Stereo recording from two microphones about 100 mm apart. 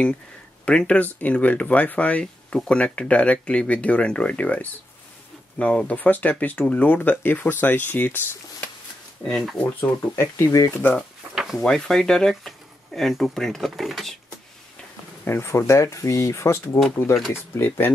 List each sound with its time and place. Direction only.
0.7 s speech: 10° left (ahead or behind)
9.3 s speech: centre (ahead or behind)
10.1 s speech: 30° left (ahead or behind)
10.8 s speech: 10° left (ahead or behind)
11.3 s a sound: 5° right (ahead or behind)
11.7 s speech: 5° left (ahead or behind)
15.2 s speech: 25° left (ahead or behind)